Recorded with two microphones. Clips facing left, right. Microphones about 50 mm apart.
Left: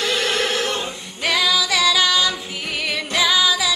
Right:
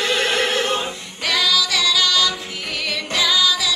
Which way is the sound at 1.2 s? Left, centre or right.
Centre.